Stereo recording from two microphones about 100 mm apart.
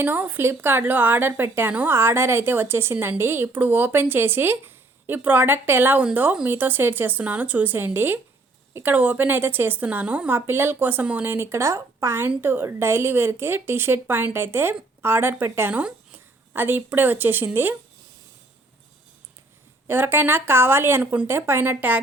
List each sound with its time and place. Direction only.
0.0 s a woman's voice: 20° right (ahead or behind)
19.9 s a woman's voice: 20° right (ahead or behind)